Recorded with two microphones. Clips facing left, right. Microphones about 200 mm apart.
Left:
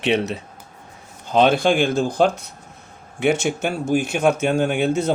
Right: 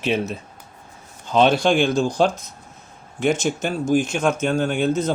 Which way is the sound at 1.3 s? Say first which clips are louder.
Even; 50° left (ahead or behind).